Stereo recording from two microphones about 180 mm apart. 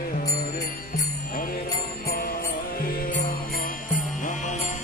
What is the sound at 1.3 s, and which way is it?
Music, 55° left (ahead or behind).